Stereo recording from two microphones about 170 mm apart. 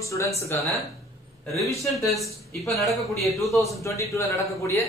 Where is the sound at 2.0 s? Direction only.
Centre (ahead or behind).